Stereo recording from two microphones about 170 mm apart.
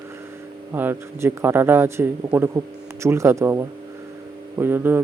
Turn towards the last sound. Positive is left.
turn(degrees=-10)  # may be behind; listen again after turning